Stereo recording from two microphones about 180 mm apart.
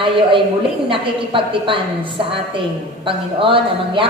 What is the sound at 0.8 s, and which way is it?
A woman's voice, 30° right (ahead or behind).